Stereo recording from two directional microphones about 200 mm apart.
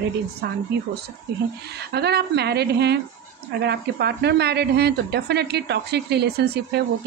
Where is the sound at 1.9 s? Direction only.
55° right (ahead or behind).